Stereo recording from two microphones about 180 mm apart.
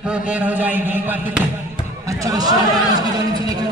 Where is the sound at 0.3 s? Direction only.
10° right (ahead or behind).